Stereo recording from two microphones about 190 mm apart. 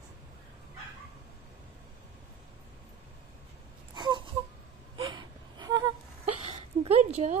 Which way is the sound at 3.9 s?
25° right (ahead or behind).